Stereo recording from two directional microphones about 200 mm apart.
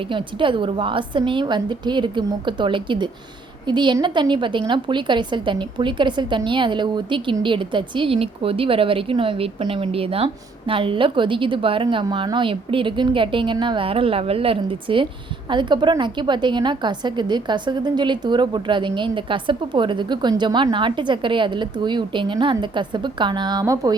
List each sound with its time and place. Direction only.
0.1 s a woman's voice: 25° right (ahead or behind)